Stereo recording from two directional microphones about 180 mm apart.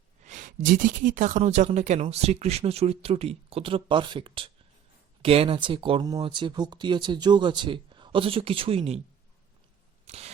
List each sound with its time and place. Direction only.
0.3 s speech: 45° right (ahead or behind)
10.1 s scissors: 35° right (ahead or behind)